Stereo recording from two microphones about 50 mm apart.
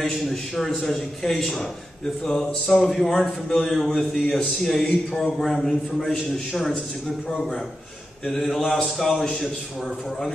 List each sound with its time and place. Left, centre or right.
0.0 s a man's voice: centre
3.7 s a man's voice: centre